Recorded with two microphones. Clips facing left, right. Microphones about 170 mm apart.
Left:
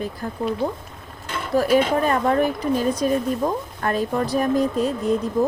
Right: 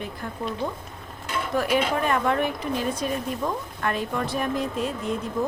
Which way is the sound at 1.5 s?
35° left (ahead or behind).